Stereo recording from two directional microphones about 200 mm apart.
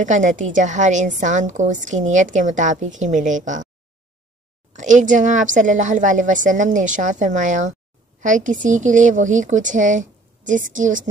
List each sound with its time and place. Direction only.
0.0 s a woman's voice: 40° right (ahead or behind)
4.7 s a woman's voice: 40° right (ahead or behind)